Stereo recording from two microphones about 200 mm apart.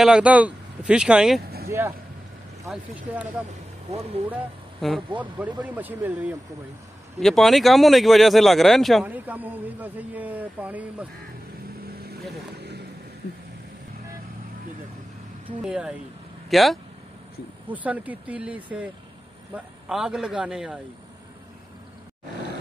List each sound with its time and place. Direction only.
0.0 s speech: 5° right (ahead or behind)
7.2 s speech: centre (ahead or behind)
12.5 s boat: 55° right (ahead or behind)
15.6 s speech: 5° right (ahead or behind)